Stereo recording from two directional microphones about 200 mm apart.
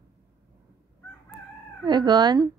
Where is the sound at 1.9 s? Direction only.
20° right (ahead or behind).